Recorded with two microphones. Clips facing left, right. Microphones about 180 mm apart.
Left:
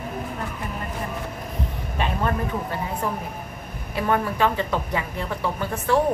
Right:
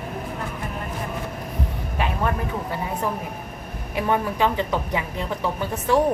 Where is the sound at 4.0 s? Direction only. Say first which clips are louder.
Even; 15° right (ahead or behind).